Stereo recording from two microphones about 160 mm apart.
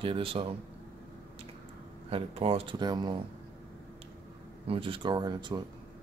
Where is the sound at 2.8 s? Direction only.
25° right (ahead or behind).